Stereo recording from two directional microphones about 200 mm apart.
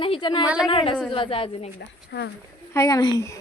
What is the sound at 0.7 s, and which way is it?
A woman's voice, 25° left (ahead or behind).